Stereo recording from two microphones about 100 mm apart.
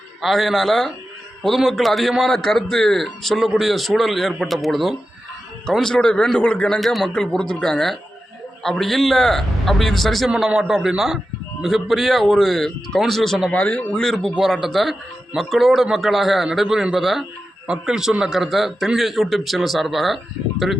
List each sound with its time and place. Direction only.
0.2 s a man's voice: centre (ahead or behind)
13.5 s a man's voice: 15° left (ahead or behind); by 20.8 s 5° right (ahead or behind)